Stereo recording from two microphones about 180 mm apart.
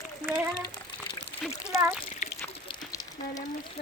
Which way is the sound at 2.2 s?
40° left (ahead or behind).